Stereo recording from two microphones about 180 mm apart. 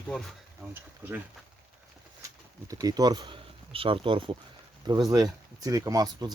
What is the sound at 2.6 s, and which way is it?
Speech, 20° right (ahead or behind).